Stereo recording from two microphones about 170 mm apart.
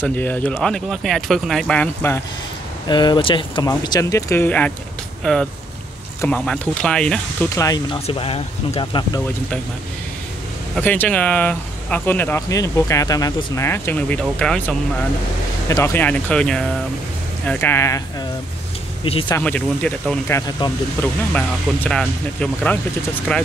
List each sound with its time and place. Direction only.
0.0 s speech: 10° left (ahead or behind)
2.9 s speech: 25° left (ahead or behind); by 7.2 s 5° left (ahead or behind)
7.4 s speech: 20° left (ahead or behind)
10.8 s speech: 10° left (ahead or behind)
19.0 s speech: 30° left (ahead or behind)
19.3 s speech: 10° left (ahead or behind)
21.0 s speech: 10° left (ahead or behind)